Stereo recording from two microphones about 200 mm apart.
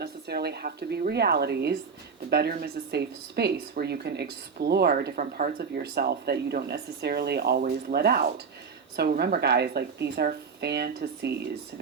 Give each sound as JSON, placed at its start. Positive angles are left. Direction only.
{"t": 0.0, "sound": "speech", "side_deg": -55}